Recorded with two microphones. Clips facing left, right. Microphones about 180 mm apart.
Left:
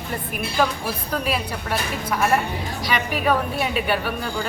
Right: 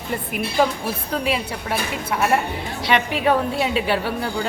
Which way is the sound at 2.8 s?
25° right (ahead or behind).